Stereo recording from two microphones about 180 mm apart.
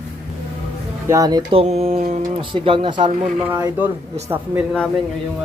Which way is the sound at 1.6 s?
35° right (ahead or behind).